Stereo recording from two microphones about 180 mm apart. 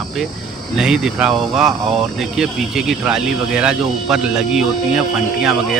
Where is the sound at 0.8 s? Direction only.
5° right (ahead or behind).